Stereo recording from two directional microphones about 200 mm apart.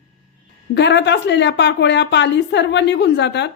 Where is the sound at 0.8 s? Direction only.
60° left (ahead or behind).